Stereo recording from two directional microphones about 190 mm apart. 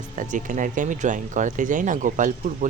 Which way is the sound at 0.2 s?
45° right (ahead or behind).